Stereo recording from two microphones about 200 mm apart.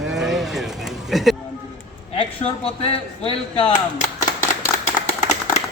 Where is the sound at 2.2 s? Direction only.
30° left (ahead or behind).